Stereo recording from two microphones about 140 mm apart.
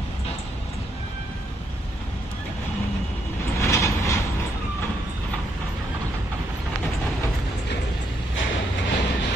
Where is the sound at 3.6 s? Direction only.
20° left (ahead or behind).